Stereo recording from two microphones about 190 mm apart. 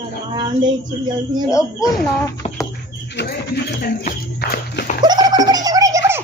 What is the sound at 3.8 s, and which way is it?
Speech, 50° left (ahead or behind).